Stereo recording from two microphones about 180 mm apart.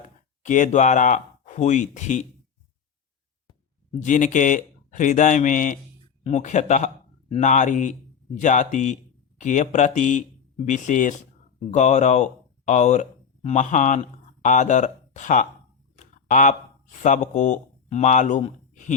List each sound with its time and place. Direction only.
0.4 s speech: 45° left (ahead or behind)
4.0 s speech: 45° left (ahead or behind)